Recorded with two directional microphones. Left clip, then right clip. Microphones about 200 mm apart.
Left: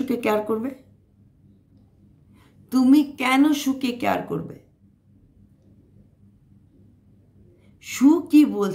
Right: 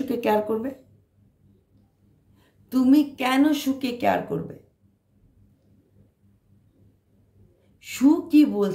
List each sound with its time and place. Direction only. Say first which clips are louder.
0.0 s speech: even; 20° left (ahead or behind)
2.3 s a woman's voice: left 2 dB; 20° left (ahead or behind)
7.8 s speech: left 2 dB; 20° left (ahead or behind)